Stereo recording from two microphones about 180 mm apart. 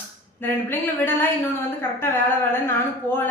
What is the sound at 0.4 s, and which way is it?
Speech, 10° left (ahead or behind).